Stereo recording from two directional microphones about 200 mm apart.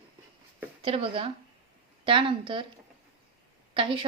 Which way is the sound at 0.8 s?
30° right (ahead or behind).